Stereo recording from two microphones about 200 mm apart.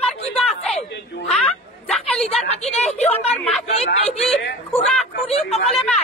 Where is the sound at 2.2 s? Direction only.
30° left (ahead or behind).